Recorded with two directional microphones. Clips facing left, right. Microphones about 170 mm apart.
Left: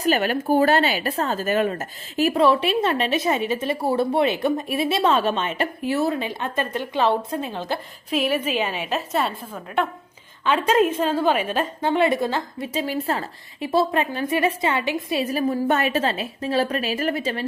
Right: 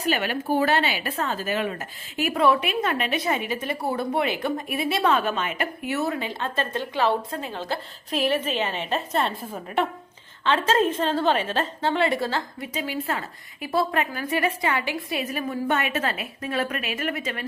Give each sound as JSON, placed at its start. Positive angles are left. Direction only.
{"t": 0.0, "sound": "speech", "side_deg": 45}
{"t": 8.1, "sound": "a woman's voice", "side_deg": 5}
{"t": 10.4, "sound": "a woman's voice", "side_deg": 15}
{"t": 12.8, "sound": "a woman's voice", "side_deg": 40}